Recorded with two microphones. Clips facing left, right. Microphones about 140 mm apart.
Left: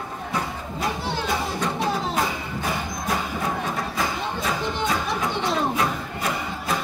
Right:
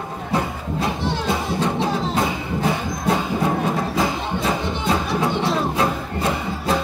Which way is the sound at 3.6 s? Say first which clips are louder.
Right 6 dB; 25° right (ahead or behind).